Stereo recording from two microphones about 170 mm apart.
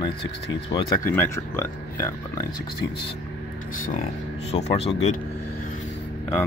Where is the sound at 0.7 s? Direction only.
30° left (ahead or behind).